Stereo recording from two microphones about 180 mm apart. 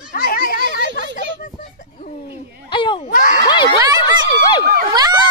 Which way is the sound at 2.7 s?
25° left (ahead or behind).